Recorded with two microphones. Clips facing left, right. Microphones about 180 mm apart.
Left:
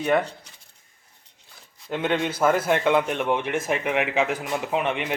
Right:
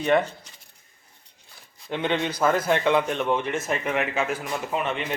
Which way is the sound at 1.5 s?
Centre (ahead or behind).